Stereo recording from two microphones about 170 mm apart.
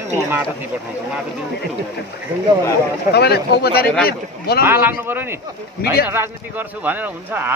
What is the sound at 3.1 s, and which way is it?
Speech, 75° left (ahead or behind).